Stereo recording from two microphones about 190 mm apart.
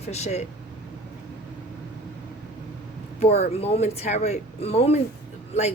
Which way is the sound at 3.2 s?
35° left (ahead or behind).